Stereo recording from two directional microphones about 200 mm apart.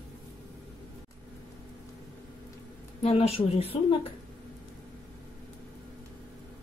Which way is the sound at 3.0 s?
30° left (ahead or behind).